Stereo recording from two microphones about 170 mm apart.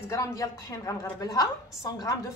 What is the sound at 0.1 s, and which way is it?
A woman's voice, 20° left (ahead or behind).